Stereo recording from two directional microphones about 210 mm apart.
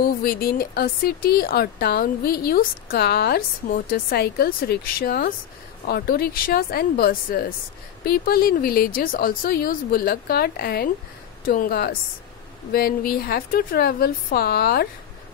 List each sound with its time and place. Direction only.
0.0 s speech: 45° left (ahead or behind)